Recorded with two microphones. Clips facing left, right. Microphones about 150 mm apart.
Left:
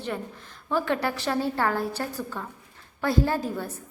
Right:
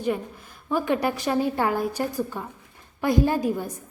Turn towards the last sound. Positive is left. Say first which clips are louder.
# right 4 dB
turn(degrees=-15)  # may be behind; listen again after turning